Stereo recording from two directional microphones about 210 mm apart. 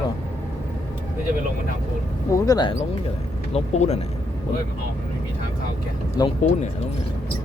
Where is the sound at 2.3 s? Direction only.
20° left (ahead or behind).